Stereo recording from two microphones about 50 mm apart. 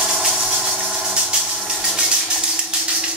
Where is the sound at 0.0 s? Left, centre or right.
Right.